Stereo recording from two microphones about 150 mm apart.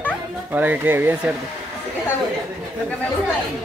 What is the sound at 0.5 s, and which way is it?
Speech, 15° right (ahead or behind).